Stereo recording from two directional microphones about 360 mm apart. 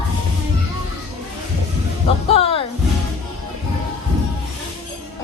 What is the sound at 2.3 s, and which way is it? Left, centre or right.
Speech, centre.